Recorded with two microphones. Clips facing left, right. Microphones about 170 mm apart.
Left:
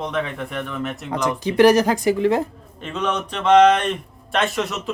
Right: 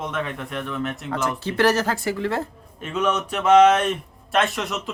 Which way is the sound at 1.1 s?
15° left (ahead or behind).